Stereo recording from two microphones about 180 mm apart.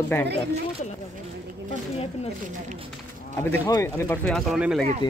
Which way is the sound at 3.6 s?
20° left (ahead or behind).